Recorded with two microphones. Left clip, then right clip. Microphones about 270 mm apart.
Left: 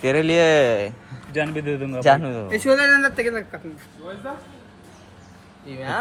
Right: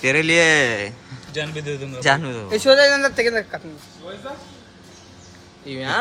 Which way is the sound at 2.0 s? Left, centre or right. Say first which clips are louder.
Left 2 dB; centre.